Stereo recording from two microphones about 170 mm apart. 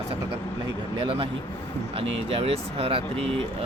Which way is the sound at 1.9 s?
35° right (ahead or behind).